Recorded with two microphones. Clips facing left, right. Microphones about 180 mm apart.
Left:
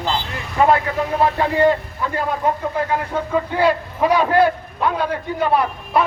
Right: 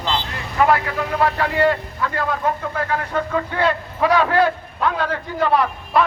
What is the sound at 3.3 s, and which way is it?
A man's voice, 10° left (ahead or behind).